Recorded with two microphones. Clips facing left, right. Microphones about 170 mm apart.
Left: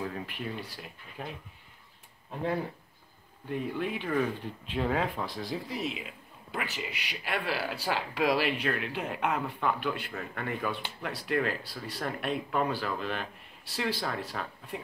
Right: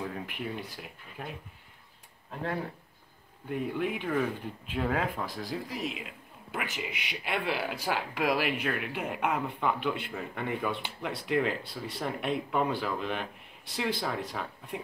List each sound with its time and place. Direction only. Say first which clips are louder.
0.0 s speech: even; 5° right (ahead or behind)
3.4 s speech: right 1 dB; 10° right (ahead or behind)
6.5 s speech: even; 10° right (ahead or behind)